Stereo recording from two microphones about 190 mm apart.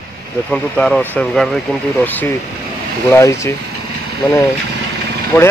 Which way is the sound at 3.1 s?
15° left (ahead or behind).